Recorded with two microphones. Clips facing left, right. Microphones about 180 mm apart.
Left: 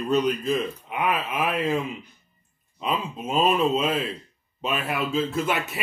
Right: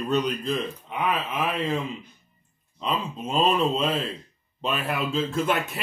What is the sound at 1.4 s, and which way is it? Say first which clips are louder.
Speech: left 3 dB; 50° left (ahead or behind).